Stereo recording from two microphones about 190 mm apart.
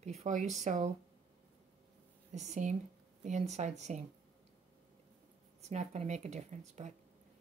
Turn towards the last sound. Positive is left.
turn(degrees=-35)  # may be behind; listen again after turning